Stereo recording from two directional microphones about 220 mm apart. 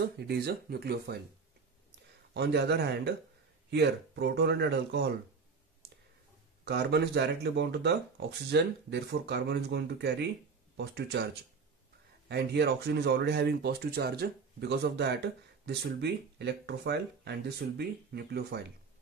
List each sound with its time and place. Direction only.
0.0 s speech: 45° right (ahead or behind)
2.3 s speech: 50° right (ahead or behind)
5.8 s a sound: 45° right (ahead or behind)
6.6 s speech: 50° right (ahead or behind)
12.3 s speech: 50° right (ahead or behind)